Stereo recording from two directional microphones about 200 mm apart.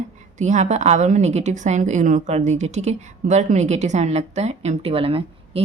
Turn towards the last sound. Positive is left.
turn(degrees=-30)  # may be behind; listen again after turning